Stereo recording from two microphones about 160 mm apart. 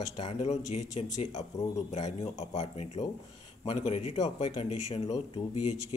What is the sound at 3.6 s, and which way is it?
Speech, 35° left (ahead or behind).